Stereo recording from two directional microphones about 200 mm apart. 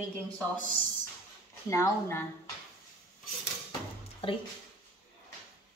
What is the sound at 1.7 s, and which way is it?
Speech, 15° left (ahead or behind).